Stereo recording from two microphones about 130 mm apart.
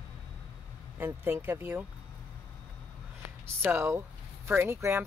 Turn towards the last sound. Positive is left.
turn(degrees=-20)  # may be behind; listen again after turning